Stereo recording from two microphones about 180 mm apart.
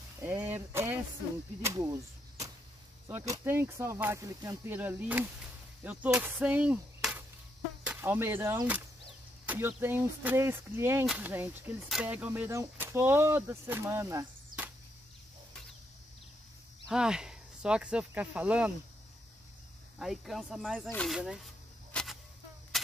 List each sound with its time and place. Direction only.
0.2 s music: 10° right (ahead or behind)
1.6 s speech: 15° right (ahead or behind)
16.8 s speech: 5° right (ahead or behind)
20.0 s speech: centre (ahead or behind)
21.9 s a sound: centre (ahead or behind)